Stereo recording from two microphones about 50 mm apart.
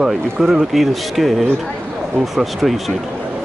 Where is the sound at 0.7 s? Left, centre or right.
Centre.